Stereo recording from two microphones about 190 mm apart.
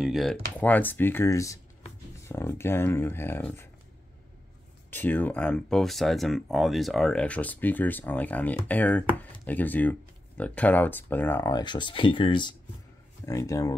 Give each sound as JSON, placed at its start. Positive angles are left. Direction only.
{"t": 0.0, "sound": "speech", "side_deg": 0}
{"t": 4.9, "sound": "speech", "side_deg": 10}